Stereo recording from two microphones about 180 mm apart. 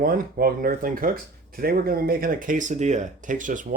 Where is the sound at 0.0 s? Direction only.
55° right (ahead or behind).